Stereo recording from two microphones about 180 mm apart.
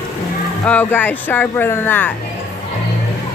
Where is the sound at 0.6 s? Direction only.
10° left (ahead or behind).